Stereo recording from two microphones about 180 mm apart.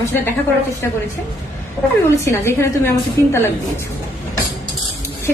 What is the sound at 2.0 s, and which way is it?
A woman's voice, 15° left (ahead or behind).